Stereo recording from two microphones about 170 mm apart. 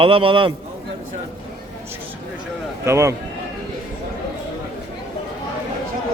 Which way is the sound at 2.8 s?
15° right (ahead or behind).